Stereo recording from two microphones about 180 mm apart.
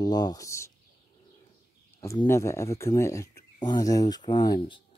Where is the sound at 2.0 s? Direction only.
15° left (ahead or behind).